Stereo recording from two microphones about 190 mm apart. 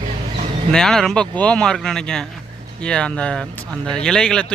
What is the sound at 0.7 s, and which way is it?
Speech, 5° left (ahead or behind).